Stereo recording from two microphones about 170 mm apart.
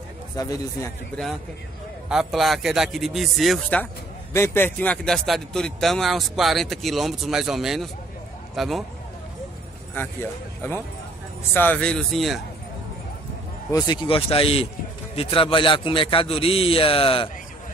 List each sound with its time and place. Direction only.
0.4 s speech: 20° left (ahead or behind)
2.0 s a man's voice: centre (ahead or behind)
10.6 s a man's voice: 15° left (ahead or behind)
13.7 s a man's voice: 25° left (ahead or behind)